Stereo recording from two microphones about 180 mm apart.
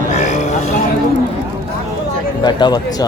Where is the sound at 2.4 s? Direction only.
25° left (ahead or behind).